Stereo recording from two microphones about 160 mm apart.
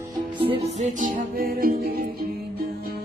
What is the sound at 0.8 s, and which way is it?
Music, 60° right (ahead or behind).